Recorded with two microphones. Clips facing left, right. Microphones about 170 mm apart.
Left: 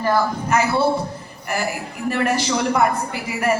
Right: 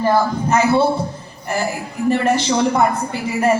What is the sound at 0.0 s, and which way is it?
Speech, 25° right (ahead or behind).